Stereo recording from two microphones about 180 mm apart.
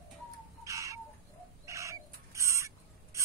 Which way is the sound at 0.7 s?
15° right (ahead or behind).